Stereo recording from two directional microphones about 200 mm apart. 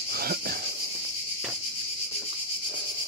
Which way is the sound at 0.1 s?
50° right (ahead or behind).